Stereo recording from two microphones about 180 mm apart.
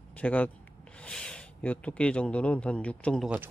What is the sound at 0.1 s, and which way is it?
Speech, 10° left (ahead or behind).